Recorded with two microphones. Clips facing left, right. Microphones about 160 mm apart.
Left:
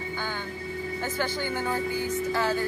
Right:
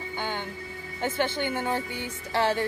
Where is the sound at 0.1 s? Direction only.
20° right (ahead or behind).